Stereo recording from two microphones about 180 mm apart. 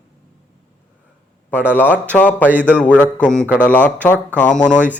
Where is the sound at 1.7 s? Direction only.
10° left (ahead or behind).